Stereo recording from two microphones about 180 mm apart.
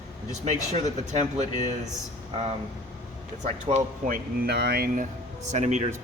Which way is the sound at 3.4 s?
40° right (ahead or behind).